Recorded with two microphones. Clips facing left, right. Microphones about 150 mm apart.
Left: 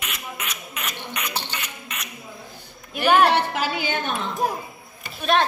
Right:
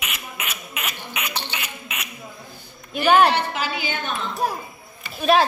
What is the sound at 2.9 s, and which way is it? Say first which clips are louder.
Speech: right 1 dB; 5° left (ahead or behind).